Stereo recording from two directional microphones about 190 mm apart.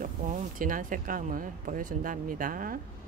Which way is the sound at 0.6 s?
45° right (ahead or behind).